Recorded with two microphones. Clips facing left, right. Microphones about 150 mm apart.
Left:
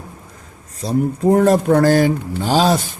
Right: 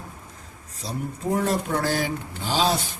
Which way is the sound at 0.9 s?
50° left (ahead or behind).